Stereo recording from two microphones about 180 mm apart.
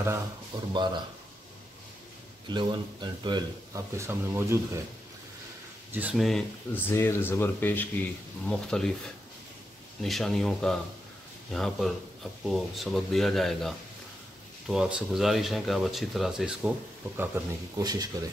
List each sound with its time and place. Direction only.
0.5 s speech: 25° right (ahead or behind)
2.5 s a man's voice: 25° right (ahead or behind)
5.9 s a man's voice: 10° right (ahead or behind)